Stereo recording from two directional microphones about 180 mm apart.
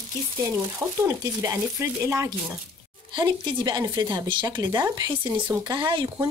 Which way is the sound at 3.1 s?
25° right (ahead or behind).